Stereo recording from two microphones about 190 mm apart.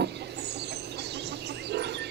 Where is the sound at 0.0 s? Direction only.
60° right (ahead or behind).